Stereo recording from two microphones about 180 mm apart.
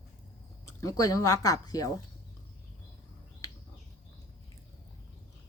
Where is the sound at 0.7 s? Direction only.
15° left (ahead or behind).